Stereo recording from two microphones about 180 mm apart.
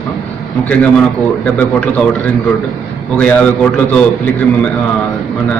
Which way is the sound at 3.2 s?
5° left (ahead or behind).